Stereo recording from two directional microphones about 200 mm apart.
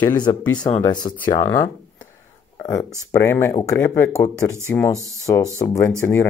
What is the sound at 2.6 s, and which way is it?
Speech, 15° left (ahead or behind).